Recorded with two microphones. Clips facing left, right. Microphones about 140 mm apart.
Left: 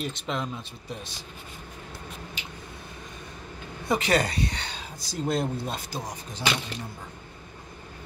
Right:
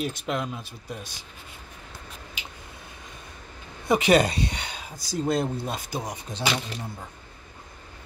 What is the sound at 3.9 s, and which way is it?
Speech, 15° right (ahead or behind).